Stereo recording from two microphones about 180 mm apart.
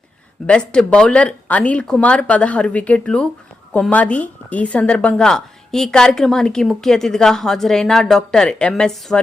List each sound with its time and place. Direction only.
0.4 s a woman's voice: 5° left (ahead or behind)